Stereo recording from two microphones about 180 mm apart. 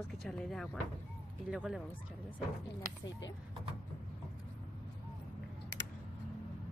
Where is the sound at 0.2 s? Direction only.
5° left (ahead or behind).